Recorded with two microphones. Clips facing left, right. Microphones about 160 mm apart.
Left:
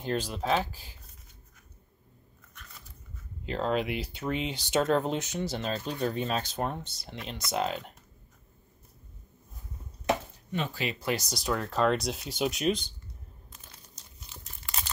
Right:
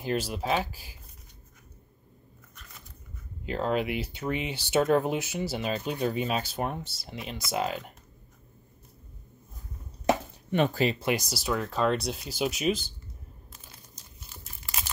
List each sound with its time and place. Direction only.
0.0 s speech: 5° right (ahead or behind)
3.4 s speech: 5° right (ahead or behind)
10.5 s speech: 60° right (ahead or behind)
11.0 s speech: 15° right (ahead or behind)